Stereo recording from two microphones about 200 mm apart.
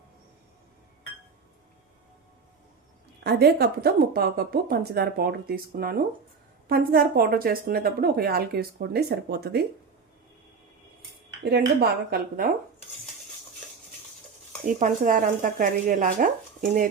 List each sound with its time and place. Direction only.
3.2 s a woman's voice: 55° right (ahead or behind)
11.4 s a woman's voice: 50° right (ahead or behind)
14.7 s speech: 40° right (ahead or behind)